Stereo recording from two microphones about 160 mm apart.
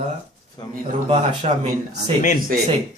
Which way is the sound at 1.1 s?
35° right (ahead or behind).